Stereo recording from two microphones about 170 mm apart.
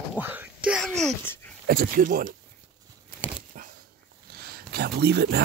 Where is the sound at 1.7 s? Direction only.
60° right (ahead or behind).